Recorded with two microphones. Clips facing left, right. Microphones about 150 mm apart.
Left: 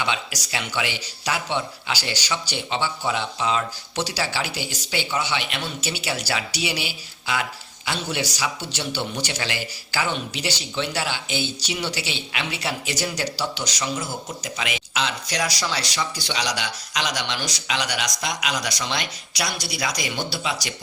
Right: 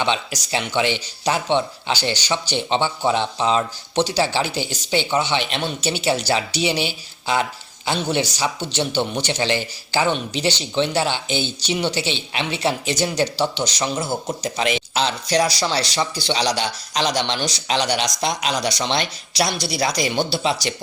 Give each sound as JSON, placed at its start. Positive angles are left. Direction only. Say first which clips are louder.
{"t": 0.0, "sound": "speech", "louder": "right 5 dB", "side_deg": -25}